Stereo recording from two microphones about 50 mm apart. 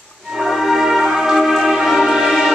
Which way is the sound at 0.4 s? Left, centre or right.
Centre.